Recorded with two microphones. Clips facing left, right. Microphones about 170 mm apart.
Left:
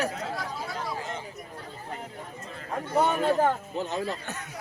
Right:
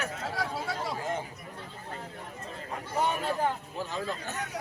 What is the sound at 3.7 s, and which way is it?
Speech, 20° left (ahead or behind).